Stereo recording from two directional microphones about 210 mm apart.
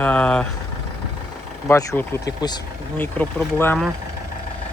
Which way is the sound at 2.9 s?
5° left (ahead or behind).